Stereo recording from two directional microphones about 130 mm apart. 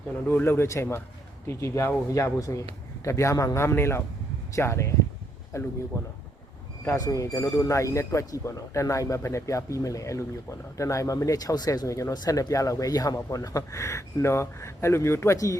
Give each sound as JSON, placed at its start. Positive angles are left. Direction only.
{"t": 0.3, "sound": "speech", "side_deg": 15}